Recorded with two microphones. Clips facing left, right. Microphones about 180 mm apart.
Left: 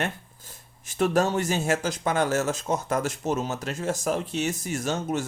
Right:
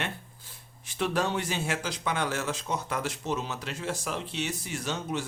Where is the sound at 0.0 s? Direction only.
45° left (ahead or behind).